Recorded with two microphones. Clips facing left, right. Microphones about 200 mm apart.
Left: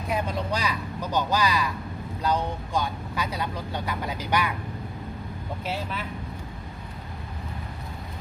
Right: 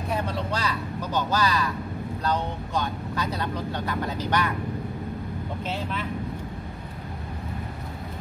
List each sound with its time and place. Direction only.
0.1 s speech: 15° left (ahead or behind)
5.7 s speech: 5° left (ahead or behind)